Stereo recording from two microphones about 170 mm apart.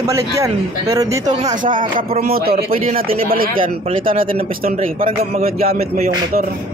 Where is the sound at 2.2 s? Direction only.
65° right (ahead or behind).